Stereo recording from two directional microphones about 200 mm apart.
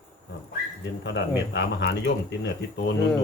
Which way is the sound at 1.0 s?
60° left (ahead or behind).